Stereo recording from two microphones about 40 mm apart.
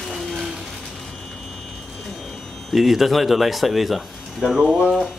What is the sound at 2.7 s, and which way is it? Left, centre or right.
Speech, centre.